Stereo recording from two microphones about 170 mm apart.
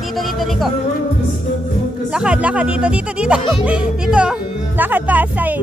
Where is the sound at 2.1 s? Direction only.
5° right (ahead or behind).